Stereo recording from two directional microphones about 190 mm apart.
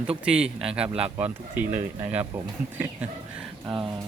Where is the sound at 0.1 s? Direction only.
5° right (ahead or behind).